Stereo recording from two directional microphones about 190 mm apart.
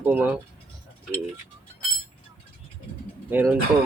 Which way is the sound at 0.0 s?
10° right (ahead or behind).